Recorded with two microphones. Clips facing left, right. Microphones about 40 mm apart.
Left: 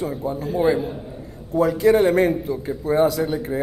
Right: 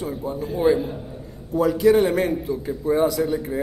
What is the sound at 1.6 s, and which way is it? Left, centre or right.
A man's voice, left.